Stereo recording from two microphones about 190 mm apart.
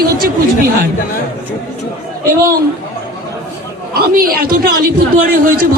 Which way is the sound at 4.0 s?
50° right (ahead or behind).